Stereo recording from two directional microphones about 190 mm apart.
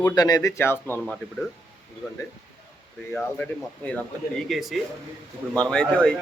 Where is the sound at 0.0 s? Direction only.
20° left (ahead or behind).